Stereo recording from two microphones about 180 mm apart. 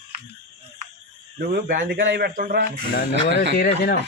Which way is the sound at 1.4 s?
60° right (ahead or behind).